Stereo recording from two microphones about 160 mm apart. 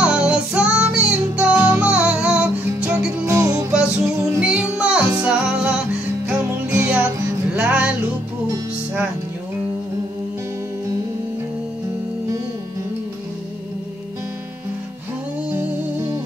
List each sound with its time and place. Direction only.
0.0 s music: 5° right (ahead or behind)
1.5 s music: 20° right (ahead or behind)
1.9 s music: 5° right (ahead or behind)
3.3 s music: 20° right (ahead or behind)
3.7 s music: 5° right (ahead or behind)